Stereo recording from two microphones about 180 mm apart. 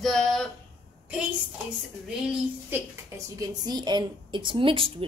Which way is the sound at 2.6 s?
15° right (ahead or behind).